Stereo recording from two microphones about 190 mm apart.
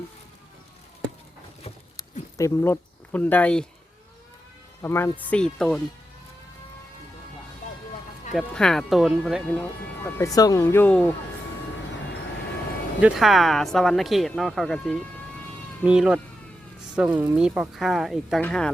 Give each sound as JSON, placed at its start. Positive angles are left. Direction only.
{"t": 2.4, "sound": "speech", "side_deg": 10}
{"t": 4.8, "sound": "speech", "side_deg": 15}
{"t": 8.4, "sound": "speech", "side_deg": 0}
{"t": 10.2, "sound": "speech", "side_deg": 20}
{"t": 13.0, "sound": "speech", "side_deg": -5}